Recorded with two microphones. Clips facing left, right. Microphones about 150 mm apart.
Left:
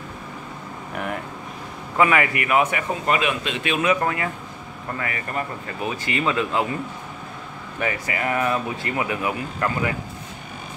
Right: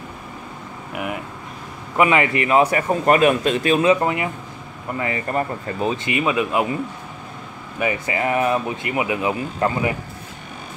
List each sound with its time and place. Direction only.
0.9 s speech: 10° right (ahead or behind)
2.0 s speech: 20° right (ahead or behind)
3.1 s a man's voice: 45° right (ahead or behind); by 6.1 s 30° right (ahead or behind)
6.1 s speech: 15° right (ahead or behind)
7.8 s speech: 25° right (ahead or behind)